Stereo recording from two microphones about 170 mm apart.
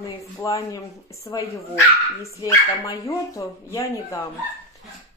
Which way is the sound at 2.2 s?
20° left (ahead or behind).